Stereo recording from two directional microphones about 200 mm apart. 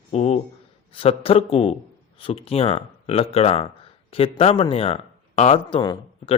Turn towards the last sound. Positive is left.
turn(degrees=25)  # may be behind; listen again after turning